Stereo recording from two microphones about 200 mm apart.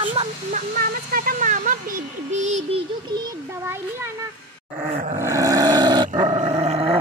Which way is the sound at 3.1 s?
20° right (ahead or behind).